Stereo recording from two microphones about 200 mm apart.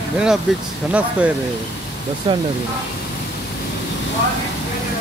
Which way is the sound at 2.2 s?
20° right (ahead or behind).